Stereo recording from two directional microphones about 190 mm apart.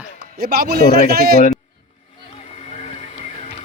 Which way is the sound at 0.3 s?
55° right (ahead or behind).